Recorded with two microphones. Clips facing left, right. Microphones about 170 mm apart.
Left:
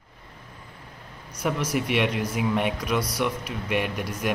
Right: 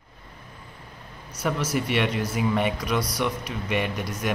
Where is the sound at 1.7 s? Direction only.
10° left (ahead or behind).